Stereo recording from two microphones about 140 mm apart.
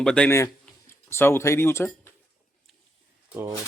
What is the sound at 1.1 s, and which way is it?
Speech, 15° left (ahead or behind).